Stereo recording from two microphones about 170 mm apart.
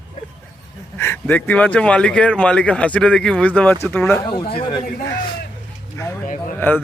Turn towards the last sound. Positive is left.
turn(degrees=10)  # may be behind; listen again after turning